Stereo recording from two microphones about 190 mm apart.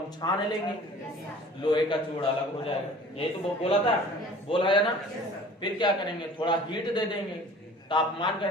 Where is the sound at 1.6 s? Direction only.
25° left (ahead or behind).